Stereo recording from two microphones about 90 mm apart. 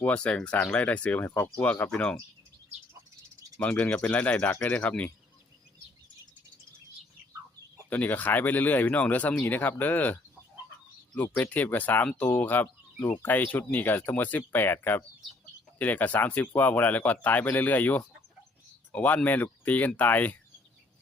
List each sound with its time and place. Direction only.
0.0 s speech: 15° left (ahead or behind)
3.6 s speech: 15° left (ahead or behind)
7.9 s speech: 15° left (ahead or behind)